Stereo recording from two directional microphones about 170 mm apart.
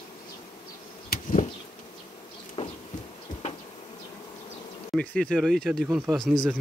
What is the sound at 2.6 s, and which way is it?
Insect, 35° left (ahead or behind).